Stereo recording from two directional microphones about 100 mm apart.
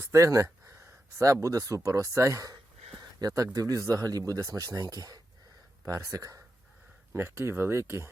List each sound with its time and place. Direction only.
0.0 s speech: 30° right (ahead or behind)